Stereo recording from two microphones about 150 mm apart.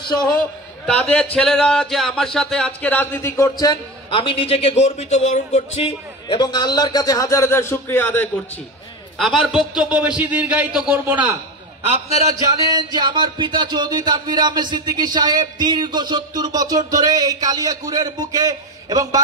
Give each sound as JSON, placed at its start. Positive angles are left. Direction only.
{"t": 0.8, "sound": "a man's voice", "side_deg": 5}
{"t": 9.2, "sound": "a man's voice", "side_deg": 0}
{"t": 12.6, "sound": "speech", "side_deg": -30}